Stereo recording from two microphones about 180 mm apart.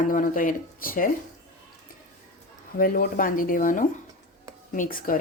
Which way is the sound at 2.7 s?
50° left (ahead or behind).